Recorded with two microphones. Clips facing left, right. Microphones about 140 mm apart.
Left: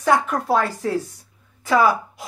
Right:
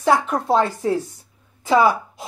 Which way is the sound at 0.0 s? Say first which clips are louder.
Right 1 dB; 25° right (ahead or behind).